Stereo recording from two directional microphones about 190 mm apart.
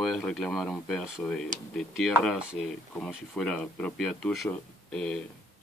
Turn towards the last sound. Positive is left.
turn(degrees=5)  # may be behind; listen again after turning